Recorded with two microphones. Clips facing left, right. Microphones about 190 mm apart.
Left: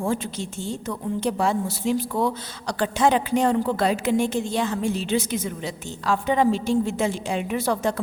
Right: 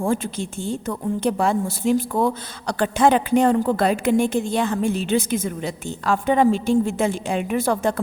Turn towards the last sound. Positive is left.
turn(degrees=-50)  # may be behind; listen again after turning